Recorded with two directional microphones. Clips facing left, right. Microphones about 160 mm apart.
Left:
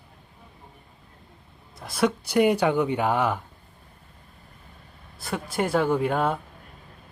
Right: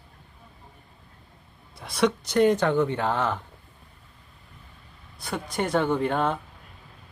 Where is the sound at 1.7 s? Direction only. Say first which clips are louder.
Even; centre (ahead or behind).